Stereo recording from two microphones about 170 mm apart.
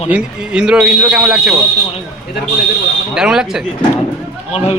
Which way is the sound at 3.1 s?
5° right (ahead or behind).